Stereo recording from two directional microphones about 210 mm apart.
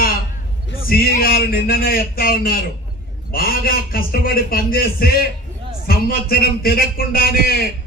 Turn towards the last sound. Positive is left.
turn(degrees=45)  # may be behind; listen again after turning